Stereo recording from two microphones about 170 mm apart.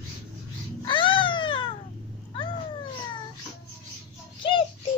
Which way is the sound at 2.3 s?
30° left (ahead or behind).